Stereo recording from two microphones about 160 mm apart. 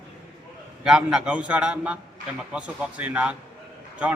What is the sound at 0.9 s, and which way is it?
A man's voice, 5° right (ahead or behind).